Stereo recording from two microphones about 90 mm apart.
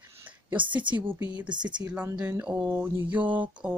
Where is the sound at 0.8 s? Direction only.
65° right (ahead or behind).